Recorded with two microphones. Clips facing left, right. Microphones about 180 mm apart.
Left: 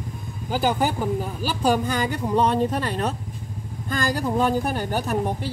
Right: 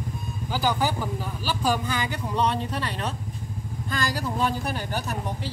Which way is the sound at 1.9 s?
45° left (ahead or behind).